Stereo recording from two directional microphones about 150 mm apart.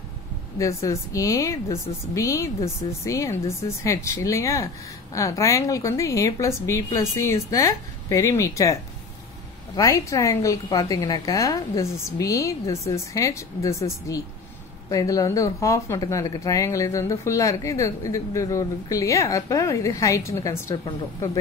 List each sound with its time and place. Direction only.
0.6 s speech: 20° left (ahead or behind)
9.8 s speech: 20° left (ahead or behind)
20.7 s speech: 30° left (ahead or behind)